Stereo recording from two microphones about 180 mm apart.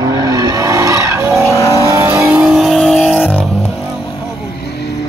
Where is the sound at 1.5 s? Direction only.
15° left (ahead or behind).